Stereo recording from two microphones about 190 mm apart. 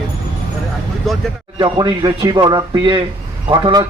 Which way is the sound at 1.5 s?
20° right (ahead or behind).